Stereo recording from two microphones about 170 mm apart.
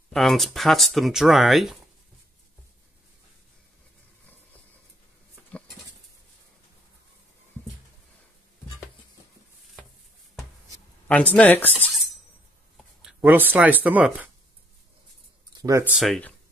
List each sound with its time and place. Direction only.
0.1 s speech: centre (ahead or behind)
11.3 s speech: 10° left (ahead or behind)
13.2 s speech: 10° right (ahead or behind)
15.5 s speech: 20° right (ahead or behind)
15.9 s speech: centre (ahead or behind)